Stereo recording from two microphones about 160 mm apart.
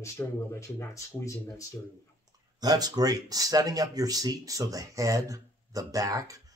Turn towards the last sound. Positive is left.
turn(degrees=-20)  # may be behind; listen again after turning